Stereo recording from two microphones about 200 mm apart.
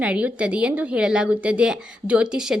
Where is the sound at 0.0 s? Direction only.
5° right (ahead or behind).